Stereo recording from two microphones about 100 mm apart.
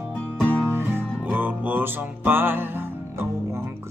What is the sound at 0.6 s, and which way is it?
Music, 25° right (ahead or behind).